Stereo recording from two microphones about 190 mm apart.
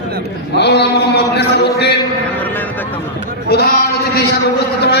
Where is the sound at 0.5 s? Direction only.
60° left (ahead or behind).